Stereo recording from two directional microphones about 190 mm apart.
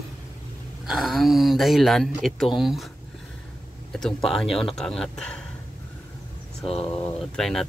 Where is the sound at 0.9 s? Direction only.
Centre (ahead or behind).